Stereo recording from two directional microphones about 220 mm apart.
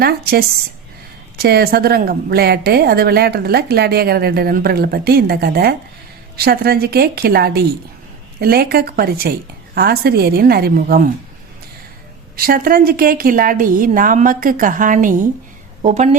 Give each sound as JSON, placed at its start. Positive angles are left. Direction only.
{"t": 0.0, "sound": "a woman's voice", "side_deg": -45}
{"t": 12.4, "sound": "a woman's voice", "side_deg": -40}